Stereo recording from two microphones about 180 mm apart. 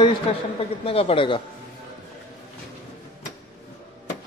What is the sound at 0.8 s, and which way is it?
Speech, 30° left (ahead or behind).